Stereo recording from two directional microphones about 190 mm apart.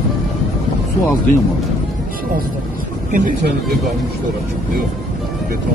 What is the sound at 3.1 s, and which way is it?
Speech, 45° right (ahead or behind).